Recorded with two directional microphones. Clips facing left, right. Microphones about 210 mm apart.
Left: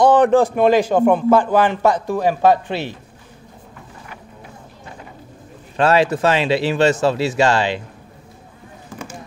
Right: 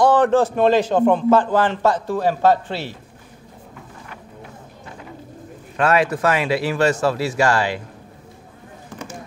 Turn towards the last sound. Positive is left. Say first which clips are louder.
# left 2 dB
turn(degrees=25)  # may be behind; listen again after turning